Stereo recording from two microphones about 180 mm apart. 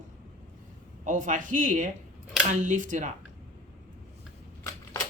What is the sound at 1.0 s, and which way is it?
Speech, 45° right (ahead or behind).